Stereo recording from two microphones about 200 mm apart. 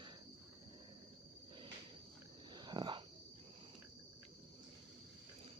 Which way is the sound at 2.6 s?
20° right (ahead or behind).